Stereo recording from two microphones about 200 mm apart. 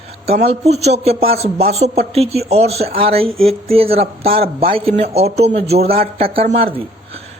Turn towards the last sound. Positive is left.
turn(degrees=-35)  # may be behind; listen again after turning